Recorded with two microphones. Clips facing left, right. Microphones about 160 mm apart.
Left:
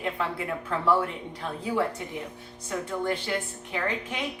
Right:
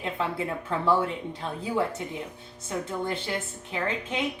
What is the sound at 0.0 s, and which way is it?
A woman's voice, 25° right (ahead or behind).